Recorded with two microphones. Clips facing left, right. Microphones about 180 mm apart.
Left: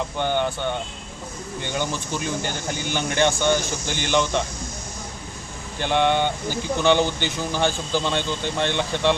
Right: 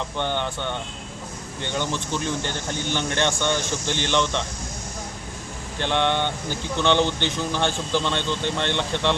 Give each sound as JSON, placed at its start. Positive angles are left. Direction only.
{"t": 0.2, "sound": "speech", "side_deg": 5}
{"t": 5.8, "sound": "speech", "side_deg": 5}